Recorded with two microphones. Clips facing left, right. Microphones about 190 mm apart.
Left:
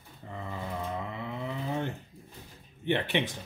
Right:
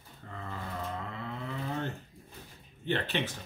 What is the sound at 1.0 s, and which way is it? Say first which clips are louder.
Speech: left 3 dB; 15° left (ahead or behind).